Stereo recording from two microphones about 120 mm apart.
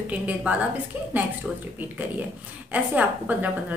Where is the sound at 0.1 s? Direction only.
10° right (ahead or behind).